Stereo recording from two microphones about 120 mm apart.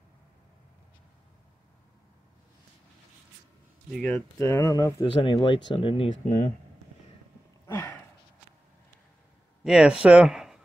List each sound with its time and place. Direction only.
4.1 s speech: 25° left (ahead or behind)
5.0 s speech: 45° left (ahead or behind)
6.2 s speech: 75° left (ahead or behind)
7.6 s a sound: 25° left (ahead or behind)
9.6 s speech: 5° right (ahead or behind)